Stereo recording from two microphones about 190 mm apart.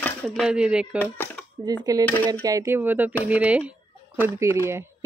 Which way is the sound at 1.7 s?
20° right (ahead or behind).